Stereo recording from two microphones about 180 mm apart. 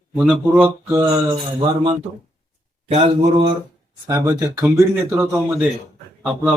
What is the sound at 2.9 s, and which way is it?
Speech, 35° right (ahead or behind).